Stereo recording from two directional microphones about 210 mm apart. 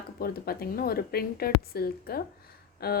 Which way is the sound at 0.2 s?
45° left (ahead or behind).